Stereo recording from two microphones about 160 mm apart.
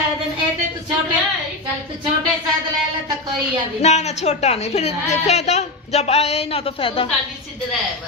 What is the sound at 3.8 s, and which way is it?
A woman's voice, 45° left (ahead or behind).